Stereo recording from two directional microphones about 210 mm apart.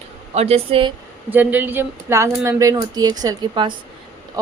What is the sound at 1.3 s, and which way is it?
Speech, 10° right (ahead or behind).